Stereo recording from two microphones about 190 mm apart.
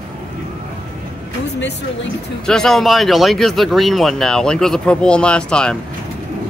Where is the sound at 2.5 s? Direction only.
5° left (ahead or behind).